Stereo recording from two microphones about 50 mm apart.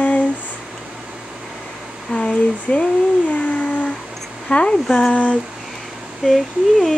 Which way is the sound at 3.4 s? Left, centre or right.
Left.